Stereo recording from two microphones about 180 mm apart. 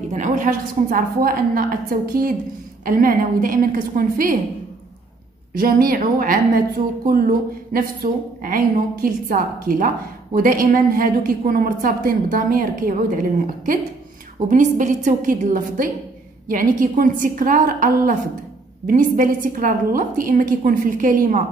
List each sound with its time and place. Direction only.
0.1 s a woman's voice: 40° right (ahead or behind)
5.6 s a woman's voice: 55° right (ahead or behind)
14.5 s a woman's voice: 45° right (ahead or behind)